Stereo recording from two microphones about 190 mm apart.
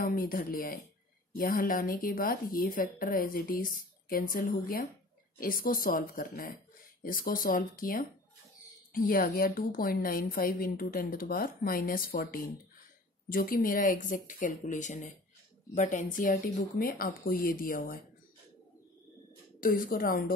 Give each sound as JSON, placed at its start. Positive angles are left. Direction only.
{"t": 0.0, "sound": "a woman's voice", "side_deg": 50}
{"t": 19.6, "sound": "a woman's voice", "side_deg": 50}